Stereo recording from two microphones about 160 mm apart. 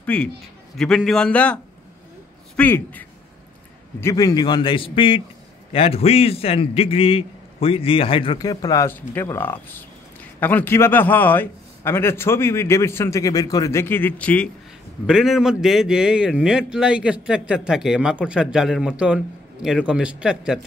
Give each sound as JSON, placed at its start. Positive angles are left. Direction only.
{"t": 0.0, "sound": "a man's voice", "side_deg": 5}
{"t": 15.0, "sound": "a man's voice", "side_deg": -5}